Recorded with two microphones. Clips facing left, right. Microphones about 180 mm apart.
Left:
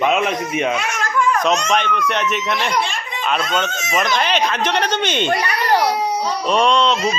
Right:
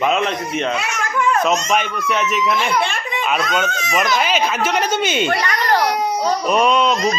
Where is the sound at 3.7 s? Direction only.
25° left (ahead or behind).